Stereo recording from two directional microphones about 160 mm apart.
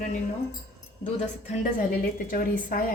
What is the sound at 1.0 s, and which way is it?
A woman's voice, 50° left (ahead or behind).